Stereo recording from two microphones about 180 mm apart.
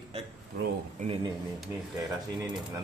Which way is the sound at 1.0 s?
45° right (ahead or behind).